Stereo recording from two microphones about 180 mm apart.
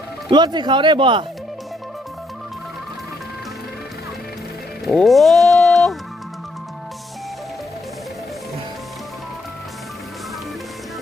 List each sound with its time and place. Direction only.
0.3 s speech: 25° right (ahead or behind)
4.9 s music: centre (ahead or behind)